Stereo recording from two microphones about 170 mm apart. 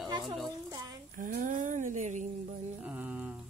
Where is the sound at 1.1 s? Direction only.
50° right (ahead or behind).